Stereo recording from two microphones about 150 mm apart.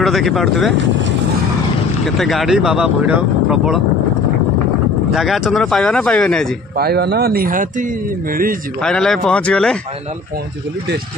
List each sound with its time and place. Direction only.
0.0 s speech: centre (ahead or behind)
2.0 s speech: centre (ahead or behind)
5.1 s speech: centre (ahead or behind)
6.8 s speech: 90° right; by 8.5 s 70° right (ahead or behind)
8.8 s speech: 5° left (ahead or behind)